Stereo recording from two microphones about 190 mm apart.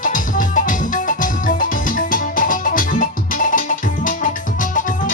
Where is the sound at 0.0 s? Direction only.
45° left (ahead or behind).